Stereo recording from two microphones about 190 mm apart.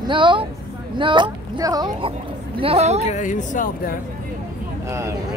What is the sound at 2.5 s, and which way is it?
Speech, 30° right (ahead or behind).